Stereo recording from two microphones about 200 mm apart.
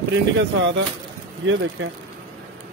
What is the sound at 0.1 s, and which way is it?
Speech, 65° right (ahead or behind).